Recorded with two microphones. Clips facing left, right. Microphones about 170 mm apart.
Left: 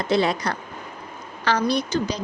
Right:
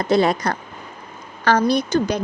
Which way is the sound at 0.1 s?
45° right (ahead or behind).